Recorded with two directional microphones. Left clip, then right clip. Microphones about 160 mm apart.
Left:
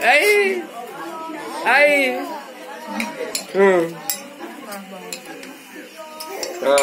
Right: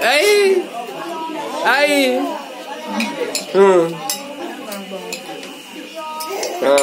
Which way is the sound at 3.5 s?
20° right (ahead or behind).